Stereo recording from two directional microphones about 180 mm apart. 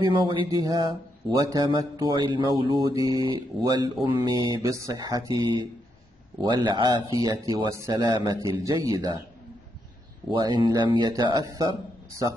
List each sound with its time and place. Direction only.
0.1 s speech: 25° right (ahead or behind)
10.3 s speech: 25° right (ahead or behind)